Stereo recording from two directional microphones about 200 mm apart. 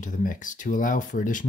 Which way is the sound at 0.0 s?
40° left (ahead or behind).